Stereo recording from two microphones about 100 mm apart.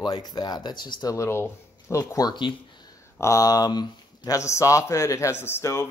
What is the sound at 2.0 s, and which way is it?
Speech, 35° left (ahead or behind).